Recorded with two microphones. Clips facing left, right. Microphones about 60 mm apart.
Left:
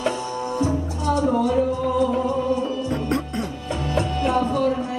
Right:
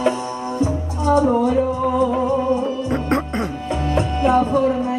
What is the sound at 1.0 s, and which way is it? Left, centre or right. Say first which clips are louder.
Music: right 5 dB; right.